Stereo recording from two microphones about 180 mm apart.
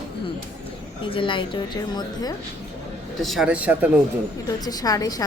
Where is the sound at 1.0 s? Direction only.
30° left (ahead or behind).